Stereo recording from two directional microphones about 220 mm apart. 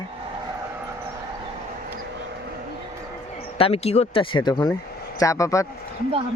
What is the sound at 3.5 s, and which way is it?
Speech, 25° left (ahead or behind).